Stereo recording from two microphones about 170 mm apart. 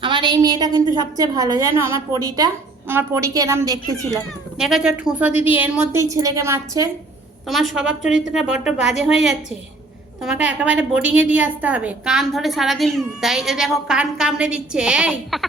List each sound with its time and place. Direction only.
0.0 s a woman's voice: 30° right (ahead or behind)
4.1 s a woman's voice: centre (ahead or behind); by 6.9 s 15° right (ahead or behind)
7.4 s a woman's voice: centre (ahead or behind)
8.0 s speech: 50° left (ahead or behind)
8.6 s a woman's voice: 5° right (ahead or behind)